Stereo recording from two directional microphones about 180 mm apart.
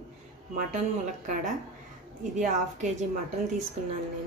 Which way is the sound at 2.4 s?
40° right (ahead or behind).